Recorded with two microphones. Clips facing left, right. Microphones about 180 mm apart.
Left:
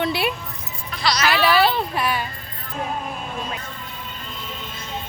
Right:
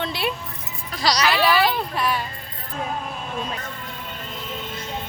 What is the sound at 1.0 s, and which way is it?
Speech, 35° right (ahead or behind).